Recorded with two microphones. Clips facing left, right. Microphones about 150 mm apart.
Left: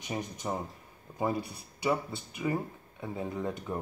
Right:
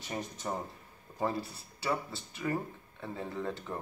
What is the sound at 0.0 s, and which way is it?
Speech, 15° left (ahead or behind).